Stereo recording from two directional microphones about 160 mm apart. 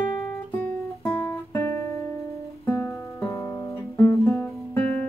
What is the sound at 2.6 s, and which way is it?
Music, 15° left (ahead or behind).